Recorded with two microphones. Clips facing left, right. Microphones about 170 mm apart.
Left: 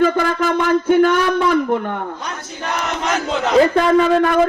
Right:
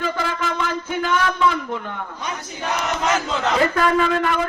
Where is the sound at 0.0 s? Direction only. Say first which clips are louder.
Left 8 dB; 55° left (ahead or behind).